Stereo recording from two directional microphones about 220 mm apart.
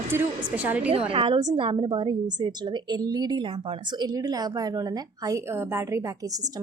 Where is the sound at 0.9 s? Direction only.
25° right (ahead or behind).